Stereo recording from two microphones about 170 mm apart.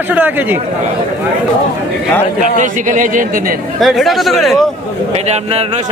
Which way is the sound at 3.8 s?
Centre (ahead or behind).